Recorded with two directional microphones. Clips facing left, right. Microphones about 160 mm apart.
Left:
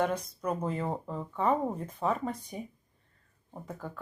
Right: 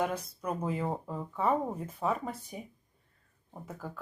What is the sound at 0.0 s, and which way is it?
Speech, 5° right (ahead or behind).